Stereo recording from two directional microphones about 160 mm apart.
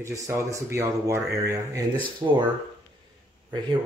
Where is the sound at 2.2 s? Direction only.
30° right (ahead or behind).